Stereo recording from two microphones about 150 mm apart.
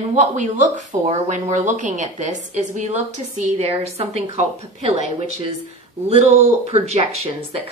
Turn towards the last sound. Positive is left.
turn(degrees=-45)  # may be behind; listen again after turning